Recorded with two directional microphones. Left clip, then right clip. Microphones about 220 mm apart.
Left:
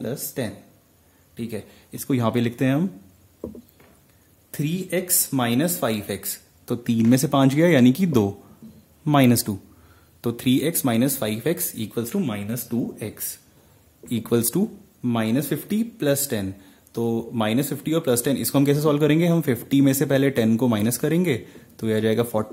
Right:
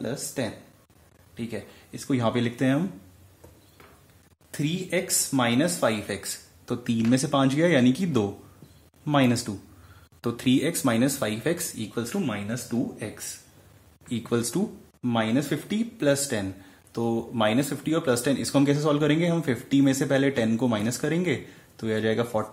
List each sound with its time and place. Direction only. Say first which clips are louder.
0.0 s speech: left 1 dB; 45° left (ahead or behind)
4.5 s speech: left 1 dB; 40° left (ahead or behind)
12.1 s speech: left 2 dB; 45° left (ahead or behind)